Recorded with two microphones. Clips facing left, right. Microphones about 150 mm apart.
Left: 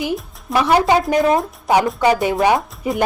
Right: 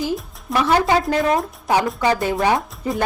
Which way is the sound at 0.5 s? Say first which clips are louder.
Left 2 dB; 20° left (ahead or behind).